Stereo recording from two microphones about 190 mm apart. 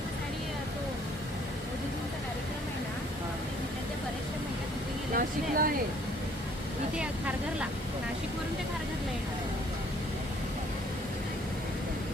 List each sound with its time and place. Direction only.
5.1 s speech: 50° right (ahead or behind)
6.9 s speech: 5° right (ahead or behind)